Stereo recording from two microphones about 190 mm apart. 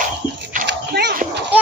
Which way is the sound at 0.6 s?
65° right (ahead or behind).